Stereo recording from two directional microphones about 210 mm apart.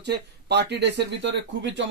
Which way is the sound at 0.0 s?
55° right (ahead or behind).